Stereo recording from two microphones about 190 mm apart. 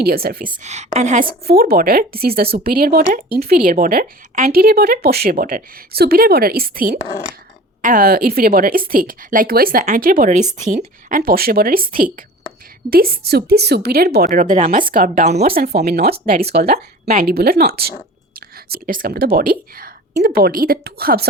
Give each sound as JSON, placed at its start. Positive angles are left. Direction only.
{"t": 0.0, "sound": "a woman's voice", "side_deg": -55}
{"t": 0.6, "sound": "a woman's voice", "side_deg": -35}
{"t": 1.5, "sound": "a woman's voice", "side_deg": -55}
{"t": 17.1, "sound": "a woman's voice", "side_deg": -40}
{"t": 17.3, "sound": "a woman's voice", "side_deg": -55}